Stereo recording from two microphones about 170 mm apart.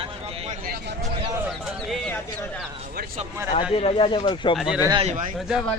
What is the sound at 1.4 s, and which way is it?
Speech, 5° left (ahead or behind).